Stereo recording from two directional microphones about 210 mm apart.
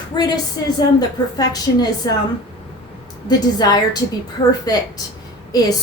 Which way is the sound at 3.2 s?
20° left (ahead or behind).